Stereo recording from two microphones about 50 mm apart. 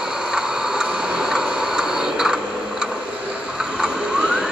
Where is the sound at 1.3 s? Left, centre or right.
Centre.